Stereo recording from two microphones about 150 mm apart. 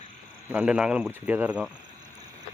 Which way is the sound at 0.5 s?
10° right (ahead or behind).